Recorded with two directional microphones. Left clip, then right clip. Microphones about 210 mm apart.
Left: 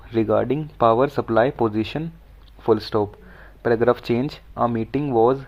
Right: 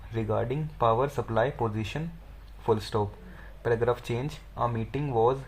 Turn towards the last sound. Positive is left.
turn(degrees=40)  # may be behind; listen again after turning